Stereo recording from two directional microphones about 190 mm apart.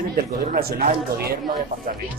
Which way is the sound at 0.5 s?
50° right (ahead or behind).